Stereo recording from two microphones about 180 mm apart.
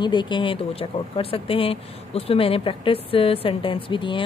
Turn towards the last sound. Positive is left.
turn(degrees=30)  # may be behind; listen again after turning